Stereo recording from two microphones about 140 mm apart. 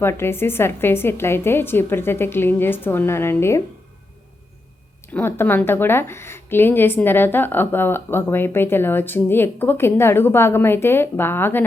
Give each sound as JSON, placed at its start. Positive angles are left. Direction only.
{"t": 0.0, "sound": "a woman's voice", "side_deg": 15}
{"t": 5.0, "sound": "a woman's voice", "side_deg": 15}